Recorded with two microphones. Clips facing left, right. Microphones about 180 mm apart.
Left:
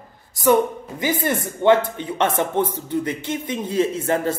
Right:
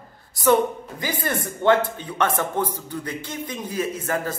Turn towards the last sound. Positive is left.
turn(degrees=25)  # may be behind; listen again after turning